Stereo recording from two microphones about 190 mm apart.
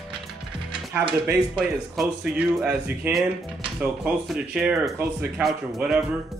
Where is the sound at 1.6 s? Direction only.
5° right (ahead or behind).